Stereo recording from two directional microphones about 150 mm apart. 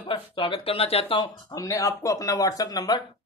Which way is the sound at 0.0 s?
35° left (ahead or behind).